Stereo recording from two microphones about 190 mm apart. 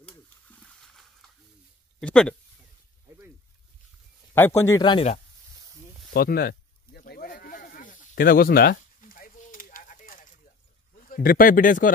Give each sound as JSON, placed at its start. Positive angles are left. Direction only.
{"t": 0.1, "sound": "wild animals", "side_deg": 5}
{"t": 2.0, "sound": "speech", "side_deg": 5}
{"t": 4.3, "sound": "a man's voice", "side_deg": 15}
{"t": 6.1, "sound": "sheep", "side_deg": 50}
{"t": 11.1, "sound": "speech", "side_deg": 50}